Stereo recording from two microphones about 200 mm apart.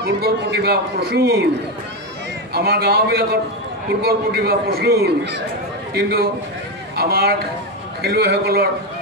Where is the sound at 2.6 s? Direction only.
50° right (ahead or behind).